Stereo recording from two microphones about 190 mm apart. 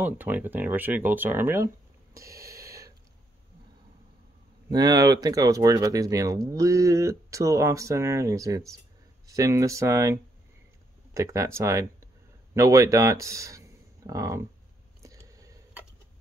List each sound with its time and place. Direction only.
0.0 s speech: 10° right (ahead or behind)
2.1 s snort: 15° right (ahead or behind)
4.6 s speech: 20° right (ahead or behind)
15.0 s a sound: 15° right (ahead or behind)